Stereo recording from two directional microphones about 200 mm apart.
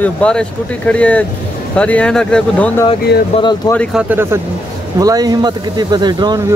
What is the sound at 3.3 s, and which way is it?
Speech, 20° left (ahead or behind).